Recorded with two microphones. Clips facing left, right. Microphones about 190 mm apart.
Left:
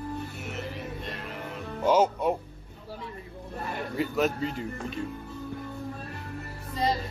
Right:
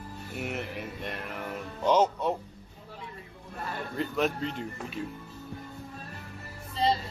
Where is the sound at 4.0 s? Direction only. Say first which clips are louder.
Left 2 dB; 5° left (ahead or behind).